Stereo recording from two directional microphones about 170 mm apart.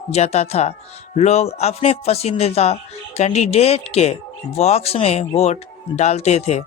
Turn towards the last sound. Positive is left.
turn(degrees=40)  # may be behind; listen again after turning